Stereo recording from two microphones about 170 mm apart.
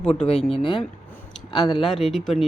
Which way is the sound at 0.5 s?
30° left (ahead or behind).